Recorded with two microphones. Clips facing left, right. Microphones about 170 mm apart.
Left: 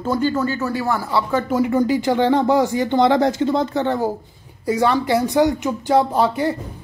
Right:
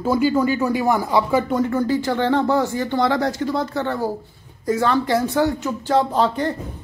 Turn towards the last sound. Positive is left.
turn(degrees=10)  # may be behind; listen again after turning